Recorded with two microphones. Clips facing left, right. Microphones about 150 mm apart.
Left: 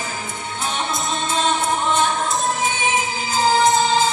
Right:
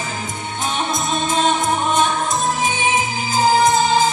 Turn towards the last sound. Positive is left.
turn(degrees=-15)  # may be behind; listen again after turning